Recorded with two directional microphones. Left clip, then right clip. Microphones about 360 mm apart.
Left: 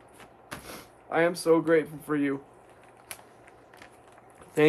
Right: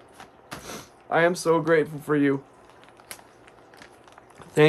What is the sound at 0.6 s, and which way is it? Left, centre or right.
Speech, right.